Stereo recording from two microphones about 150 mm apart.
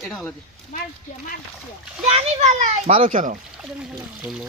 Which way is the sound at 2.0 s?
45° right (ahead or behind).